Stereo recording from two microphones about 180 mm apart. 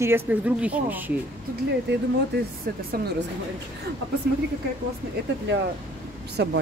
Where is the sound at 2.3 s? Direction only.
65° right (ahead or behind).